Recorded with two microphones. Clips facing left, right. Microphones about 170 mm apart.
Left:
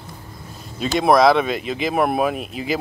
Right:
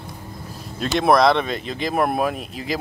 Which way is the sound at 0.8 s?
Centre (ahead or behind).